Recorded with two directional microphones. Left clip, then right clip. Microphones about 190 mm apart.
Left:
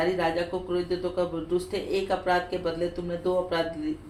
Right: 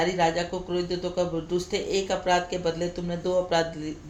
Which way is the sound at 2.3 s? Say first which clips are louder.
Right 2 dB; 45° right (ahead or behind).